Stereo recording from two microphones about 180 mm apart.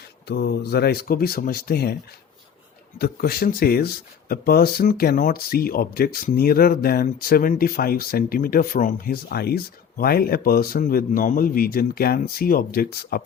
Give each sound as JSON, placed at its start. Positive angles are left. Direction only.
{"t": 0.3, "sound": "speech", "side_deg": 65}
{"t": 3.0, "sound": "speech", "side_deg": 55}